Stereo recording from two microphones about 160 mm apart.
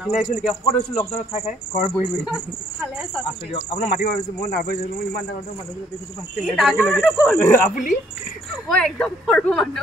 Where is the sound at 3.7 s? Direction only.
60° left (ahead or behind).